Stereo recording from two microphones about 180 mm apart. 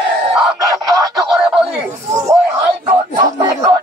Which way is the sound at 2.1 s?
20° right (ahead or behind).